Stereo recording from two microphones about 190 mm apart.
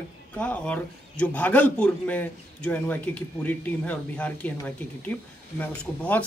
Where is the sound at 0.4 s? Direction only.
5° left (ahead or behind).